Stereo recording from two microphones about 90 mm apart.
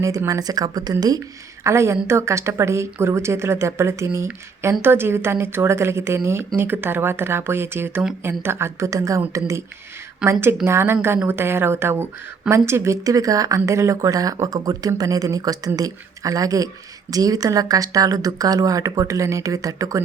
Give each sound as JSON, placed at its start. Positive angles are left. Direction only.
{"t": 0.3, "sound": "speech", "side_deg": -45}
{"t": 1.6, "sound": "speech", "side_deg": -30}
{"t": 10.2, "sound": "a woman's voice", "side_deg": -10}
{"t": 10.7, "sound": "speech", "side_deg": -30}